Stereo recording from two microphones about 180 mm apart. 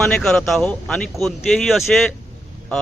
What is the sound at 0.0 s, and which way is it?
Speech, centre (ahead or behind).